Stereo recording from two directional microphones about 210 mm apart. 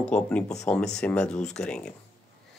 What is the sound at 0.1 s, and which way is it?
Speech, 5° left (ahead or behind).